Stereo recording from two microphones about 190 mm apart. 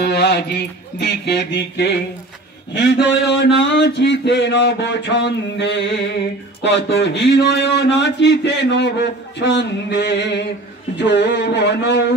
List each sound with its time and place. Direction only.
0.0 s a man's voice: 60° left (ahead or behind)